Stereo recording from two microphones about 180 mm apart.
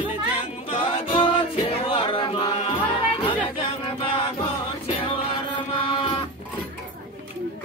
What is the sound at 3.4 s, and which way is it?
Chant, 30° left (ahead or behind).